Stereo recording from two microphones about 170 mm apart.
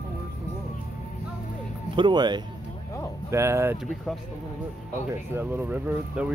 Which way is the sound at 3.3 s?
15° right (ahead or behind).